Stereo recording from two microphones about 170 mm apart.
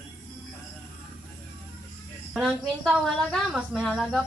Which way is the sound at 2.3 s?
Centre (ahead or behind).